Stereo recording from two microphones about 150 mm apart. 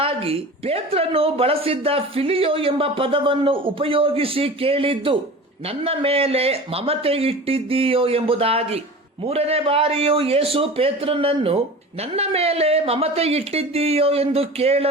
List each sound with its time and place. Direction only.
0.0 s a man's voice: 40° right (ahead or behind)